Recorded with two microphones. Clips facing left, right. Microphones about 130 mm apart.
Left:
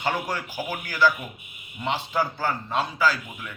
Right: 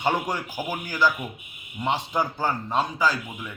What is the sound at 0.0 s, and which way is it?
A man's voice, 15° right (ahead or behind).